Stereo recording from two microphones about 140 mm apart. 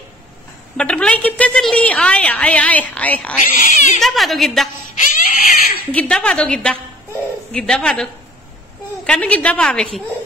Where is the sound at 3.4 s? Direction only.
60° left (ahead or behind).